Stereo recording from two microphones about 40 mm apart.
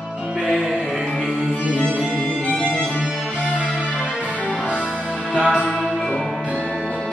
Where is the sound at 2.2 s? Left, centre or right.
Left.